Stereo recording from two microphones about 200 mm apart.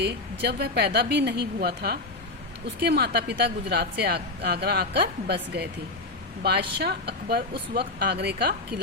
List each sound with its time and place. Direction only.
0.0 s a woman's voice: 55° right (ahead or behind)